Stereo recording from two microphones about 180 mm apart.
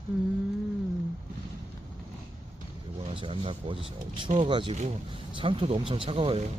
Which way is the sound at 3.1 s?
30° right (ahead or behind).